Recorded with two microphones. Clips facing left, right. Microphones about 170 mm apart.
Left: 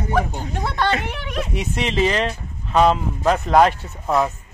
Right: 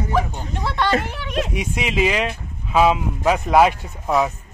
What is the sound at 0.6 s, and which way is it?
Speech, 45° left (ahead or behind).